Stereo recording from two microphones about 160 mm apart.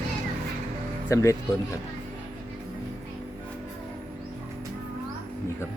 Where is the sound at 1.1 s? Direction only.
15° left (ahead or behind).